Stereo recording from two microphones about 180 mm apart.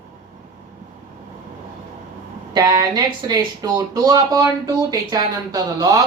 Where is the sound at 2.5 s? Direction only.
20° right (ahead or behind).